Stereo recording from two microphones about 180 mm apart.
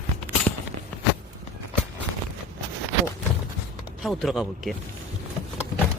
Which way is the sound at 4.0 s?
Centre (ahead or behind).